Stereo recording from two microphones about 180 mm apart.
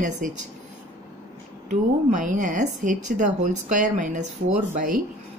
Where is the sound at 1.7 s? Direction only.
45° right (ahead or behind).